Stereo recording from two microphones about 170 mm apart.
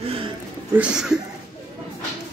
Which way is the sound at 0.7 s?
5° right (ahead or behind).